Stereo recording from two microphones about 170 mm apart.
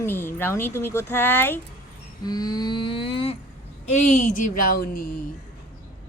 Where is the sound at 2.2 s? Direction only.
25° left (ahead or behind).